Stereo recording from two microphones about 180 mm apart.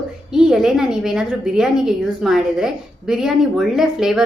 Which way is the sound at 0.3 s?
5° right (ahead or behind).